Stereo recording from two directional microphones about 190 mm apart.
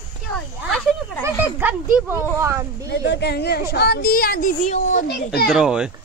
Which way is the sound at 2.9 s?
60° left (ahead or behind).